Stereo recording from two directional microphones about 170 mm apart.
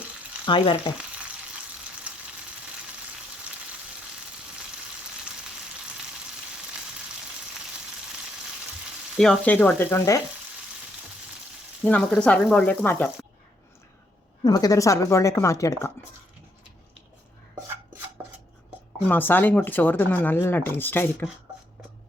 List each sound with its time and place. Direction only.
0.4 s speech: 30° left (ahead or behind)
2.1 s frying: 5° right (ahead or behind)
9.1 s speech: 5° left (ahead or behind)
11.8 s frying: 10° left (ahead or behind)
12.1 s speech: 5° left (ahead or behind)
14.4 s speech: 20° left (ahead or behind)
19.0 s speech: 10° left (ahead or behind)